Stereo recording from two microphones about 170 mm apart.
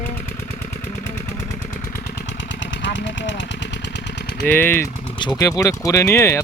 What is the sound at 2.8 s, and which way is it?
Speech, 90° left.